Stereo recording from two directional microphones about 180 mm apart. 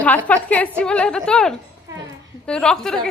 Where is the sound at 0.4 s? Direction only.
5° left (ahead or behind).